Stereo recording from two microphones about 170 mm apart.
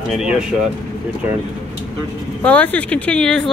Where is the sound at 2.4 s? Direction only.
5° left (ahead or behind).